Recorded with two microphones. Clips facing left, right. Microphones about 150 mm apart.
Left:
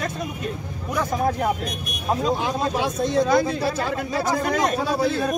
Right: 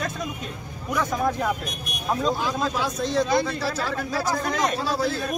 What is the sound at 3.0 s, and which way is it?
Speech, 50° left (ahead or behind).